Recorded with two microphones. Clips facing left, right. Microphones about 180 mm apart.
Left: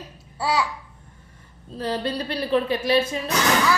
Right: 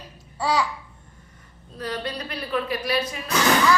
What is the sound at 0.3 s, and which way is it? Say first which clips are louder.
Babbling: even; 5° left (ahead or behind).